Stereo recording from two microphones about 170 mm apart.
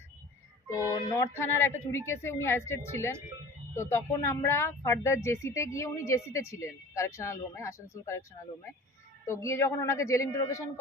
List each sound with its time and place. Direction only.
0.7 s speech: 20° left (ahead or behind)
9.2 s speech: 15° left (ahead or behind)